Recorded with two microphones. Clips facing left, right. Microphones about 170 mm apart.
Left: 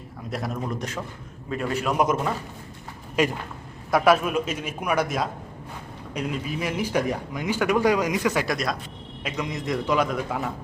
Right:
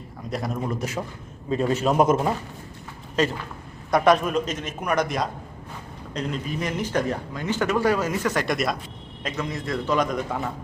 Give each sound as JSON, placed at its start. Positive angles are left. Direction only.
{"t": 0.3, "sound": "a man's voice", "side_deg": 0}
{"t": 1.5, "sound": "a man's voice", "side_deg": -25}
{"t": 3.2, "sound": "speech", "side_deg": 10}
{"t": 8.5, "sound": "a man's voice", "side_deg": 0}
{"t": 9.2, "sound": "a man's voice", "side_deg": 15}